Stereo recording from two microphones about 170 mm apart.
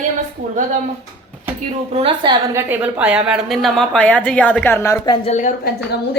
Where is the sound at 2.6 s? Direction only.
10° right (ahead or behind); by 5.1 s 15° left (ahead or behind).